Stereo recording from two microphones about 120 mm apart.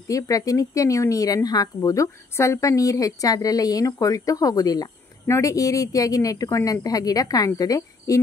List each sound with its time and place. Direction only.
0.1 s speech: 30° left (ahead or behind)